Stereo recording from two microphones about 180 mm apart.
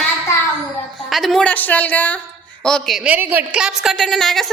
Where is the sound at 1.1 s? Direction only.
Centre (ahead or behind).